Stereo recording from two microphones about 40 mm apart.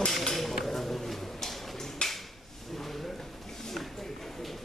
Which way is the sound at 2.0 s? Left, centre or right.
Left.